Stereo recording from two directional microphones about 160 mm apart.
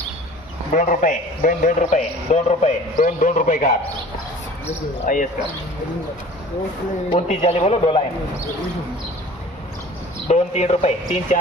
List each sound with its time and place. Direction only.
0.7 s a man's voice: 55° left (ahead or behind)
5.0 s speech: 55° left (ahead or behind)
7.1 s a man's voice: 40° left (ahead or behind)
10.2 s a man's voice: 45° left (ahead or behind)